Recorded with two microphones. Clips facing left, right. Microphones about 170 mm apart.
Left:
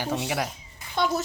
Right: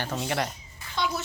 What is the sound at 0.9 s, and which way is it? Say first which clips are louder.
Speech: left 5 dB; 50° left (ahead or behind).